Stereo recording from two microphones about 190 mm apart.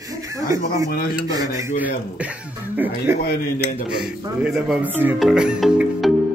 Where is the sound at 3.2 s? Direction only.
55° left (ahead or behind).